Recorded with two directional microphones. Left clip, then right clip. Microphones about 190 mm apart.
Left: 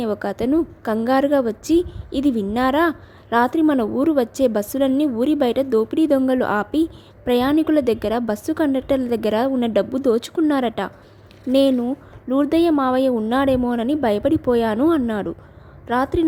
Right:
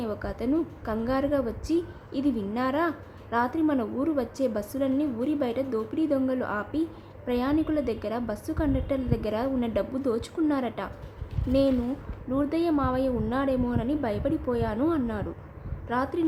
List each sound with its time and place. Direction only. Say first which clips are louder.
0.0 s a woman's voice: left 9 dB; 40° left (ahead or behind)
12.3 s a woman's voice: left 9 dB; 40° left (ahead or behind)